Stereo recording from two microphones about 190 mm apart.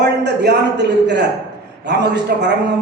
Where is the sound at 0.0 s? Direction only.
65° right (ahead or behind).